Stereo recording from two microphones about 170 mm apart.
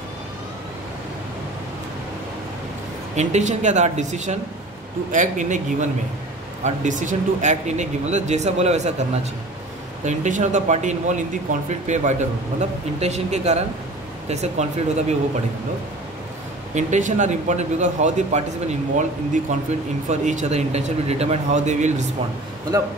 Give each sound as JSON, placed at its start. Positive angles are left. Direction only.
{"t": 3.2, "sound": "speech", "side_deg": -40}
{"t": 16.7, "sound": "speech", "side_deg": -45}
{"t": 19.5, "sound": "speech", "side_deg": -45}